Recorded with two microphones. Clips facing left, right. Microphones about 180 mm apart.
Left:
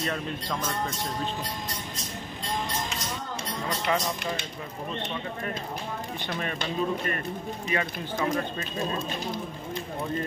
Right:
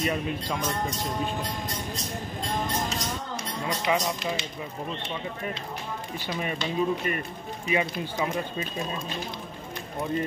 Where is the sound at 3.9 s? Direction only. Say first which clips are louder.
Right 2 dB; 10° right (ahead or behind).